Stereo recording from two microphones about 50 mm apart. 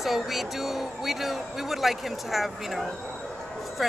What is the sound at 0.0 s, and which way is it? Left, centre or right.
Speech, centre.